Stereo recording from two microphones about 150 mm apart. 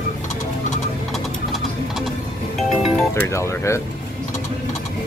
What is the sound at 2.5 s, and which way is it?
Music, centre (ahead or behind).